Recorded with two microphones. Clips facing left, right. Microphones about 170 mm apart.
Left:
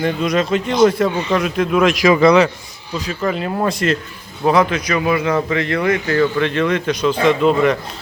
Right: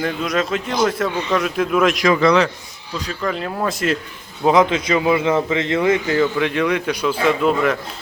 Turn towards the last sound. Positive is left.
turn(degrees=-5)  # may be behind; listen again after turning